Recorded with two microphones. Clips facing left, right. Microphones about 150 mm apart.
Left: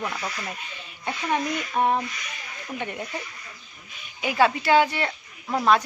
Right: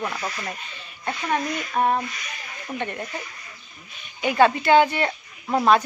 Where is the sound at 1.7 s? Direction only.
15° left (ahead or behind).